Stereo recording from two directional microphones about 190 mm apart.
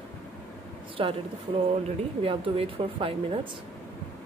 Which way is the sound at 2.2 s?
30° right (ahead or behind).